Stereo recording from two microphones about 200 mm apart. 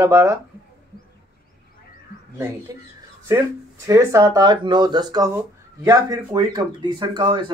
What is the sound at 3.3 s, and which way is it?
Speech, 15° right (ahead or behind).